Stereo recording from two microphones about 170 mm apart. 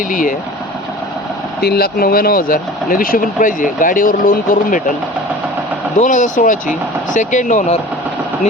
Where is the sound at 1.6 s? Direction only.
65° left (ahead or behind); by 4.9 s 50° left (ahead or behind).